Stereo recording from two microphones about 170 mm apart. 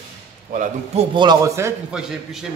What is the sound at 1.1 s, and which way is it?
Speech, 20° right (ahead or behind).